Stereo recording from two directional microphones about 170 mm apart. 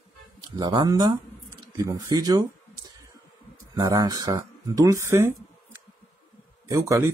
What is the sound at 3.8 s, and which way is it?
Speech, 25° right (ahead or behind).